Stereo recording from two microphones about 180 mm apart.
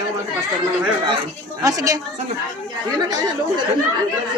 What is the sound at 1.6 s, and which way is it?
Speech, 20° right (ahead or behind).